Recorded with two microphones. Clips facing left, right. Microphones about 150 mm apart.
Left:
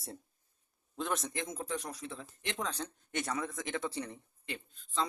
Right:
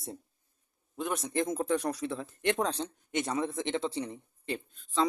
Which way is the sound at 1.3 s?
40° right (ahead or behind).